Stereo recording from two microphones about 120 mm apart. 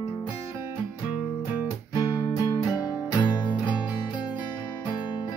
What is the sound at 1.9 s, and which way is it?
Music, 30° left (ahead or behind).